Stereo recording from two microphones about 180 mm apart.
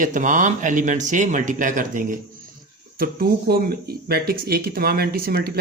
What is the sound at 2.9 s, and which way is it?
Speech, 55° right (ahead or behind).